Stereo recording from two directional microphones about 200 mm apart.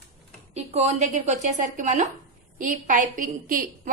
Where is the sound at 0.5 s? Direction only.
30° right (ahead or behind).